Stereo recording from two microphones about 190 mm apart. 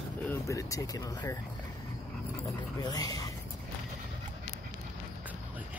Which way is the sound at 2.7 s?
20° left (ahead or behind).